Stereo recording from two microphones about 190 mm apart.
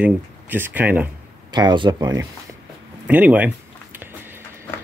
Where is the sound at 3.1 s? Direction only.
10° right (ahead or behind).